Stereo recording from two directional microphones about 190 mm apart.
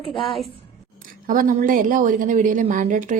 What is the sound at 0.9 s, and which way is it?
Speech, 45° right (ahead or behind).